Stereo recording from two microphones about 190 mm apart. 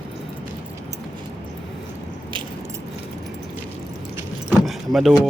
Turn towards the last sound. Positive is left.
turn(degrees=0)  # may be behind; listen again after turning